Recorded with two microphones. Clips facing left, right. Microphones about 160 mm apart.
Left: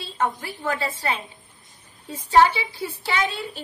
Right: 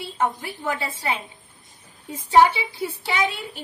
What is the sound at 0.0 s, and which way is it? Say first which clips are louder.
A woman's voice: right 1 dB; 20° right (ahead or behind).